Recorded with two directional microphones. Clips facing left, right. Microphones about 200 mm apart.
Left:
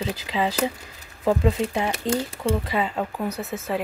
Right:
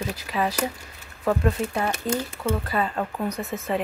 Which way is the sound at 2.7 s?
15° left (ahead or behind).